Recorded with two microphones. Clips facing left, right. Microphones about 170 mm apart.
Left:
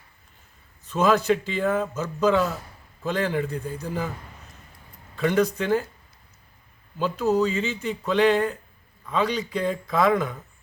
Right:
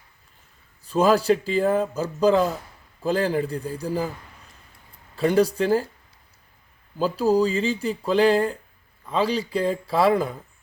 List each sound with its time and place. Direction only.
0.9 s speech: 35° right (ahead or behind)
5.1 s speech: 35° right (ahead or behind)
7.0 s speech: 35° right (ahead or behind)